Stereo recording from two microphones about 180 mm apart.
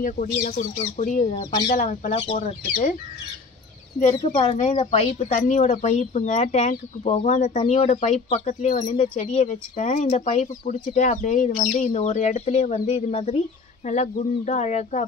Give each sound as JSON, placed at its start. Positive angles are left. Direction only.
{"t": 0.0, "sound": "speech", "side_deg": 45}
{"t": 2.1, "sound": "speech", "side_deg": 35}
{"t": 4.1, "sound": "speech", "side_deg": 20}
{"t": 4.4, "sound": "speech", "side_deg": 35}